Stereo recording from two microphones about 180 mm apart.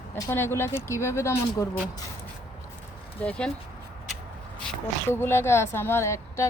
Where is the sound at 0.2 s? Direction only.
15° left (ahead or behind).